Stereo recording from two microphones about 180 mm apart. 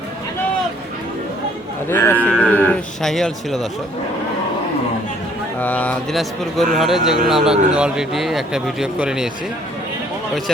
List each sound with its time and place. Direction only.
1.9 s speech: 15° left (ahead or behind)
5.5 s speech: 10° left (ahead or behind)